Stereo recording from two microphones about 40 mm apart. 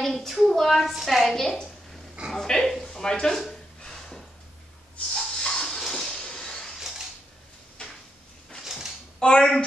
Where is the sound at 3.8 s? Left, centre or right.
Centre.